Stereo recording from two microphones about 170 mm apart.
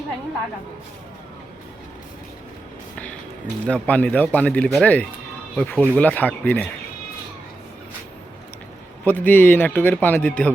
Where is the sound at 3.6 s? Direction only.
10° left (ahead or behind).